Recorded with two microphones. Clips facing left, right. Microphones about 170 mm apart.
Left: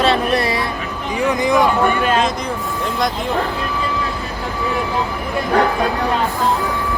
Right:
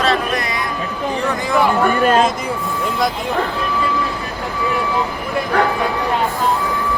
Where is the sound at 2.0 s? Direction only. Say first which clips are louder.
Right 3 dB; 40° right (ahead or behind).